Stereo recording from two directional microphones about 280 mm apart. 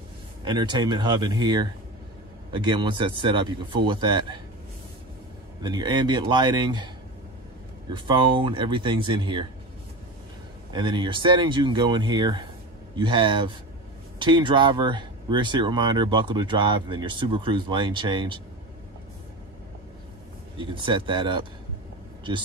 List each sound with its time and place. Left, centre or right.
0.5 s speech: centre
5.6 s speech: centre
7.9 s speech: centre
10.7 s speech: centre
20.5 s speech: centre